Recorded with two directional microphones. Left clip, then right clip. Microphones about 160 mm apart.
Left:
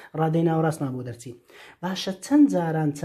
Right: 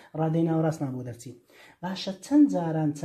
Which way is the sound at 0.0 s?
35° left (ahead or behind).